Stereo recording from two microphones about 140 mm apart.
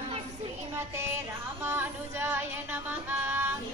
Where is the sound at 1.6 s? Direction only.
15° right (ahead or behind).